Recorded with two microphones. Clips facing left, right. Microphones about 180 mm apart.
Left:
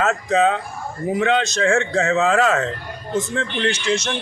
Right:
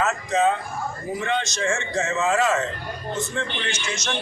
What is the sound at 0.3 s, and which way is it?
A man's voice, 65° left (ahead or behind).